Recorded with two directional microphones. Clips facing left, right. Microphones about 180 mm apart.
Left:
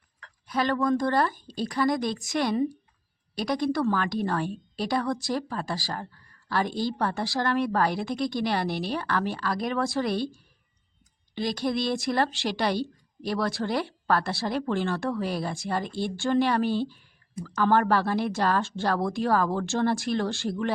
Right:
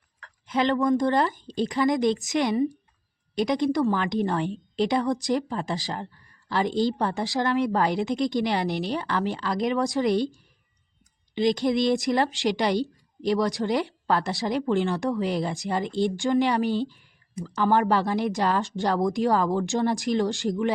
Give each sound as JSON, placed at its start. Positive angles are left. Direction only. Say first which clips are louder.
{"t": 0.4, "sound": "a woman's voice", "louder": "right 3 dB", "side_deg": -20}
{"t": 11.3, "sound": "a woman's voice", "louder": "right 5 dB", "side_deg": -20}